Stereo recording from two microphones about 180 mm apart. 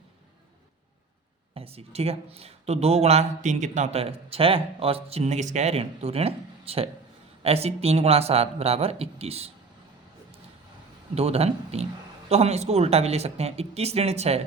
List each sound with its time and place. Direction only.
1.5 s a woman's voice: 35° right (ahead or behind)
11.1 s a woman's voice: 35° right (ahead or behind)